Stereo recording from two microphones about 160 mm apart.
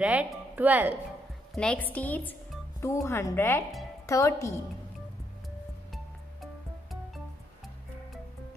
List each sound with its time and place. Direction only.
0.0 s speech: 10° right (ahead or behind)
1.5 s a woman's voice: 5° left (ahead or behind)